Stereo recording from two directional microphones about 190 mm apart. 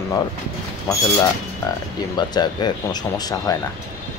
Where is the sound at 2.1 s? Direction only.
20° left (ahead or behind).